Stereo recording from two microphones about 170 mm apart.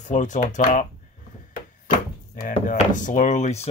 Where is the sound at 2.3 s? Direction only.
50° left (ahead or behind).